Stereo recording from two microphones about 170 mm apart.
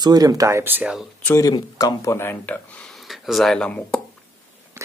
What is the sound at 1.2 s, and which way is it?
Speech, 20° left (ahead or behind).